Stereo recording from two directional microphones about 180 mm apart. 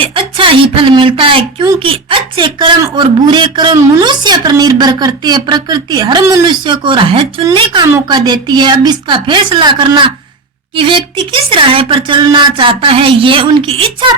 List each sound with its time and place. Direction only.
0.0 s a woman's voice: 30° right (ahead or behind)